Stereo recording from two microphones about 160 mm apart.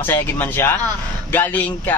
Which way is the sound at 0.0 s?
10° left (ahead or behind).